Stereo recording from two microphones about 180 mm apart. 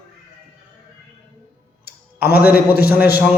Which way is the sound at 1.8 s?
60° left (ahead or behind).